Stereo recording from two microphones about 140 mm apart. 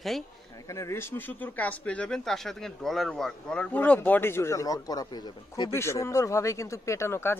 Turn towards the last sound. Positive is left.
turn(degrees=15)  # may be behind; listen again after turning